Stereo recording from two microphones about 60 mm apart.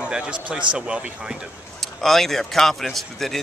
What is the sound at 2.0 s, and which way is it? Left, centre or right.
Speech, centre.